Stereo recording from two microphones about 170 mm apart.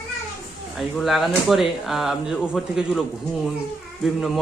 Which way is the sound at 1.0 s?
Centre (ahead or behind).